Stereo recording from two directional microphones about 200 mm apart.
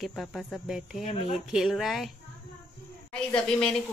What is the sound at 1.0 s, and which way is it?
Speech, 30° left (ahead or behind).